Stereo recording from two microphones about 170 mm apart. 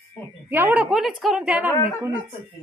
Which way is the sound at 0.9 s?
Centre (ahead or behind).